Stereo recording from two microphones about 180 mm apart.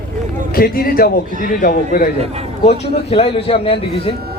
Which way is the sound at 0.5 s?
55° left (ahead or behind).